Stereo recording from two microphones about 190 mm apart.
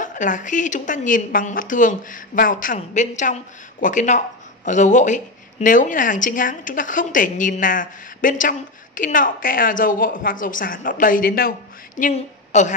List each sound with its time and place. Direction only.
0.0 s a woman's voice: 40° left (ahead or behind)